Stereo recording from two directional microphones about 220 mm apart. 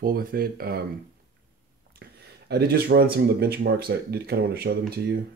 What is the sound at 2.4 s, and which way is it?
Speech, 45° right (ahead or behind).